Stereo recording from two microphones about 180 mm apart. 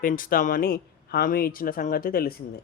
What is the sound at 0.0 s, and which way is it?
Speech, 50° left (ahead or behind).